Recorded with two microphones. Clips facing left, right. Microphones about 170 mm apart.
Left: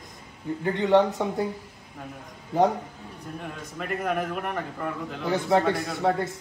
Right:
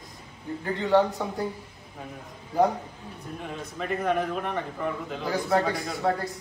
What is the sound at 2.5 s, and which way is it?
Speech, 25° left (ahead or behind).